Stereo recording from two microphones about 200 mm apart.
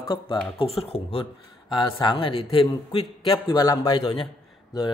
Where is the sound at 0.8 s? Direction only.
30° left (ahead or behind).